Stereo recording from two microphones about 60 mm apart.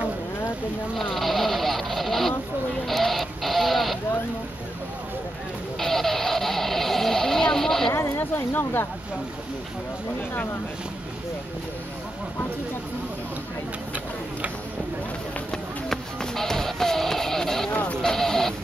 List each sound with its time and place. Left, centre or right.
0.9 s vehicle: centre
2.9 s a sound: centre
5.8 s vehicle: centre
7.9 s a sound: left
15.5 s music: centre
18.0 s sheep: centre